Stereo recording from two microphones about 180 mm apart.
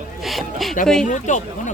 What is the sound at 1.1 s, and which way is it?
Speech, 45° left (ahead or behind).